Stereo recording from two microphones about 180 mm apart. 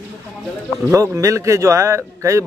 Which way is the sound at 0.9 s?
15° right (ahead or behind).